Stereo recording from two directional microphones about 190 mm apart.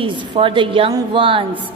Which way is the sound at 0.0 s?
25° right (ahead or behind).